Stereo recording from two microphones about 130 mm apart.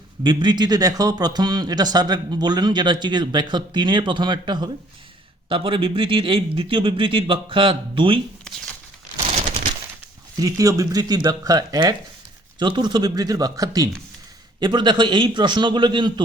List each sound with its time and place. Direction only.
0.2 s speech: 40° right (ahead or behind)
10.3 s speech: 25° right (ahead or behind)